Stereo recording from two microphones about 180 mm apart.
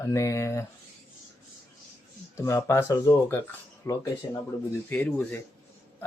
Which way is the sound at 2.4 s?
15° left (ahead or behind).